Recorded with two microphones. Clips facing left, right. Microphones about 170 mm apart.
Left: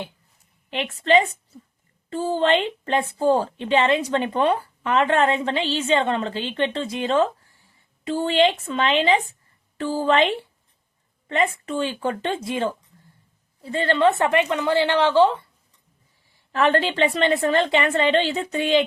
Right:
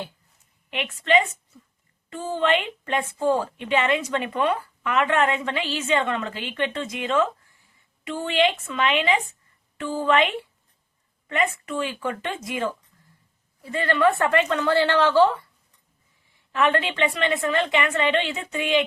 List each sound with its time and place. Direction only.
0.7 s a woman's voice: 30° left (ahead or behind)
16.5 s a woman's voice: 35° left (ahead or behind)